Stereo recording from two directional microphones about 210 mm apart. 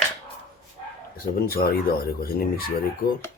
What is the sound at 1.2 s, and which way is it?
Speech, 45° left (ahead or behind).